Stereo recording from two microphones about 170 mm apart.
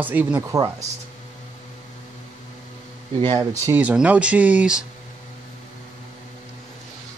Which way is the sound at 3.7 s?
10° right (ahead or behind).